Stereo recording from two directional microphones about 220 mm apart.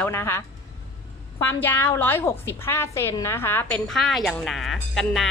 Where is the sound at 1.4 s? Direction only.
10° left (ahead or behind).